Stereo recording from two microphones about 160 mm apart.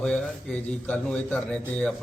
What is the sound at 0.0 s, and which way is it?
A man's voice, 5° left (ahead or behind).